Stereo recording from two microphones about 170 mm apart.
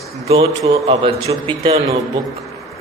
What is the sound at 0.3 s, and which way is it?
A man's voice, 35° right (ahead or behind).